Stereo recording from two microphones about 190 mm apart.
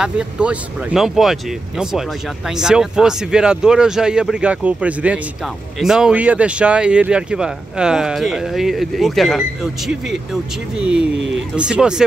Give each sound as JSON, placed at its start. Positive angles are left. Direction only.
{"t": 0.0, "sound": "speech", "side_deg": -5}
{"t": 11.1, "sound": "speech", "side_deg": -75}
{"t": 11.5, "sound": "speech", "side_deg": -5}